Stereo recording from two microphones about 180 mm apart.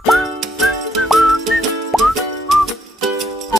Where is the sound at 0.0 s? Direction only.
Centre (ahead or behind).